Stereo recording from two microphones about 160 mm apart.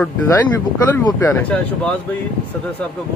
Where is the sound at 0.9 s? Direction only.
15° left (ahead or behind).